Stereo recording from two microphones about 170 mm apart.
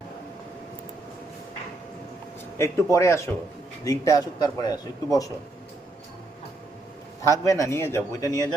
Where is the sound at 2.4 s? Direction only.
15° left (ahead or behind).